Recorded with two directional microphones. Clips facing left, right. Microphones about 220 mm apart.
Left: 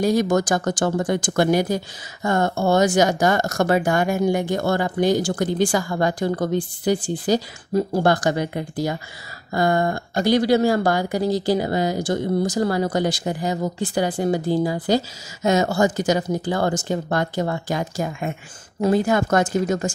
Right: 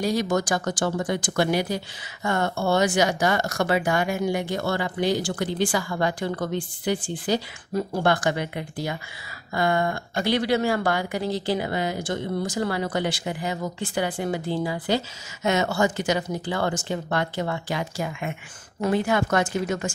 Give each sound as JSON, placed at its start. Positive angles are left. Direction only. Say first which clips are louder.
{"t": 0.0, "sound": "speech", "louder": "left 5 dB", "side_deg": 50}